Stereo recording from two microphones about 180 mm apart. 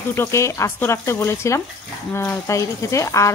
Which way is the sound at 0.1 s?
15° left (ahead or behind).